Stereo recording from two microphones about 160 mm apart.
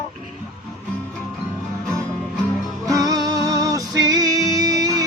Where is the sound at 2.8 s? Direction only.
20° right (ahead or behind).